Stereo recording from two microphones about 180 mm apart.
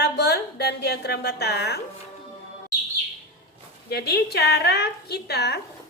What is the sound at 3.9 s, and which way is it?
A woman's voice, 60° left (ahead or behind).